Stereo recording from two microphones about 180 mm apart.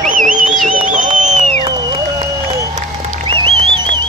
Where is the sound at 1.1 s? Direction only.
40° right (ahead or behind).